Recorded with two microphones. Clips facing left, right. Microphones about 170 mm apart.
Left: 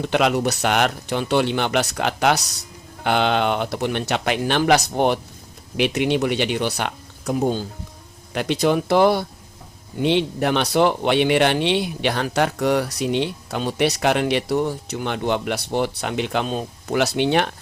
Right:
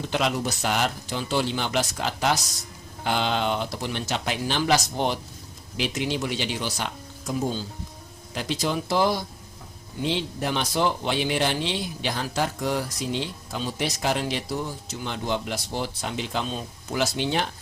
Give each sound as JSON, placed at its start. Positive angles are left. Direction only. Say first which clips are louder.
{"t": 0.1, "sound": "speech", "louder": "left 6 dB", "side_deg": 65}